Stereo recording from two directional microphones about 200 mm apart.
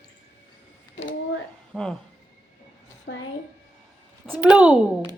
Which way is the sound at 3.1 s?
65° left (ahead or behind).